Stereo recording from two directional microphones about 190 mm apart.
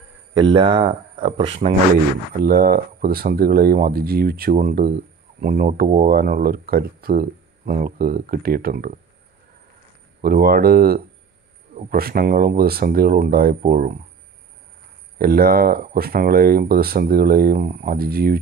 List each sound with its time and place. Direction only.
0.3 s speech: 25° right (ahead or behind)
2.3 s speech: 50° right (ahead or behind)
10.2 s speech: 50° right (ahead or behind)
15.1 s speech: 50° right (ahead or behind)